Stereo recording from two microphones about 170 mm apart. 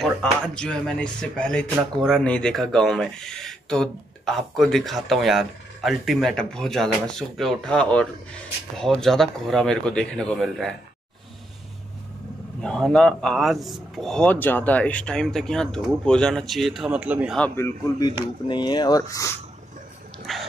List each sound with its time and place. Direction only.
0.0 s speech: 5° left (ahead or behind)
12.5 s speech: 5° left (ahead or behind)
17.4 s speech: 15° left (ahead or behind)
20.3 s speech: centre (ahead or behind)